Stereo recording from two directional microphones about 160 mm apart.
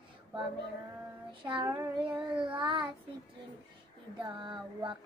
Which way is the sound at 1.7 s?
10° right (ahead or behind).